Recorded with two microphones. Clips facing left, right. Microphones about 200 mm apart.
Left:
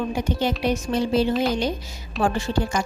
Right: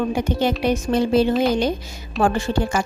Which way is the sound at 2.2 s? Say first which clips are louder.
Right 3 dB; 50° right (ahead or behind).